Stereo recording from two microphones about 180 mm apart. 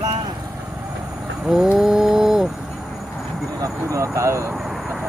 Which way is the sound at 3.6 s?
15° right (ahead or behind).